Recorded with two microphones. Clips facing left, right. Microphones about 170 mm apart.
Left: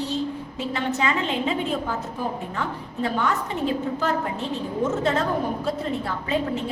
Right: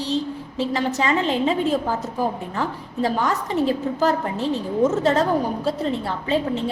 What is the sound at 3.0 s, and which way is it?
A woman's voice, 35° right (ahead or behind).